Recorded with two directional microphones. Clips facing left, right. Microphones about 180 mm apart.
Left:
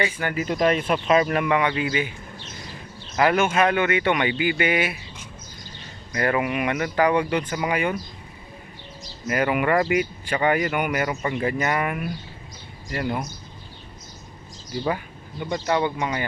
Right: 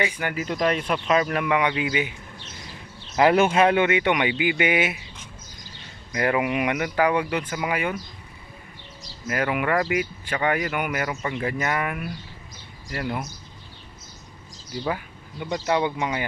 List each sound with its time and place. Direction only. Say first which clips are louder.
0.0 s speech: left 1 dB; 10° right (ahead or behind)
0.3 s speech: left 3 dB; 5° left (ahead or behind)
1.5 s speech: left 1 dB; 15° right (ahead or behind)
3.2 s speech: right 2 dB; 25° right (ahead or behind)
6.1 s speech: even; 10° right (ahead or behind)
9.2 s speech: left 3 dB; 5° left (ahead or behind)
14.8 s a sound: left 2 dB; centre (ahead or behind)
15.4 s speech: even; 10° right (ahead or behind)